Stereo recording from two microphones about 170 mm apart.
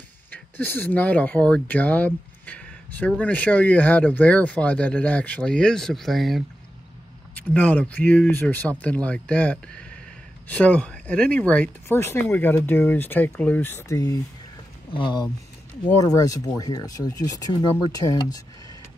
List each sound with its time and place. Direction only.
0.3 s speech: 10° left (ahead or behind)